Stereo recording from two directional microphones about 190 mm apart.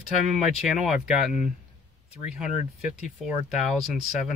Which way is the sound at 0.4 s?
Centre (ahead or behind).